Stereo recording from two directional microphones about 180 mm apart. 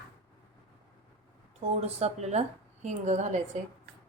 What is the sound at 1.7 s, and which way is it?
A woman's voice, 35° right (ahead or behind).